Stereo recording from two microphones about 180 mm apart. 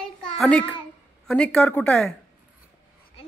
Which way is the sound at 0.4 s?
5° left (ahead or behind).